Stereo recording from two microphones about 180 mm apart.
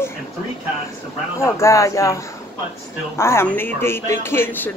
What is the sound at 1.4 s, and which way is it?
Speech, 15° left (ahead or behind).